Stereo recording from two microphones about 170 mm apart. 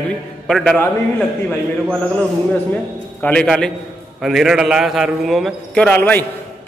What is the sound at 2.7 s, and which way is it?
A man's voice, 10° left (ahead or behind).